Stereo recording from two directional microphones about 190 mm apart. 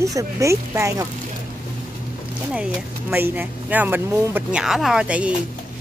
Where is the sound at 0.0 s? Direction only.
15° right (ahead or behind).